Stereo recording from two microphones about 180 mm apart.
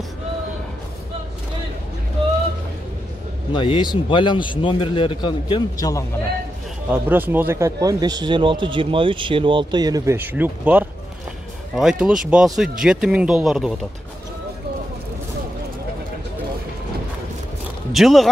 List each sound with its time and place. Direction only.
3.5 s a man's voice: 25° left (ahead or behind)
6.9 s speech: 10° right (ahead or behind)
17.9 s speech: centre (ahead or behind)